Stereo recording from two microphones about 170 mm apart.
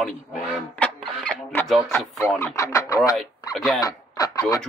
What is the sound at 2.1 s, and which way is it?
Speech, 15° left (ahead or behind).